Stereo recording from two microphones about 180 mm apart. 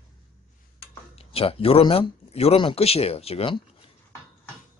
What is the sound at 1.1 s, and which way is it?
Speech, 30° left (ahead or behind).